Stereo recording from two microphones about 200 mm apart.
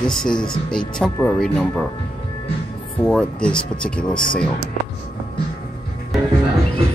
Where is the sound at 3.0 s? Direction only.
5° left (ahead or behind).